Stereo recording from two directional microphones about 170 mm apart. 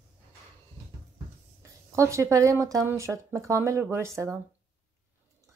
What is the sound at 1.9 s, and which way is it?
Speech, 15° right (ahead or behind).